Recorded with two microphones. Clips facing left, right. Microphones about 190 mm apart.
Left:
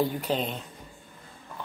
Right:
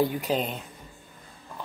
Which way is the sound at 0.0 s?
10° right (ahead or behind).